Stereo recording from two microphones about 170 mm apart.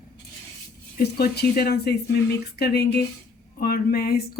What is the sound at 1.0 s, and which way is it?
Speech, 70° left (ahead or behind).